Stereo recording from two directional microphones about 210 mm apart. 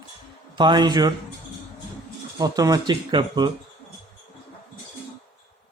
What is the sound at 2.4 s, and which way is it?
Speech, 15° right (ahead or behind).